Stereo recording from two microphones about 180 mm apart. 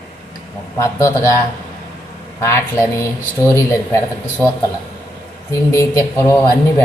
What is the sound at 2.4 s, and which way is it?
A man's voice, 15° left (ahead or behind).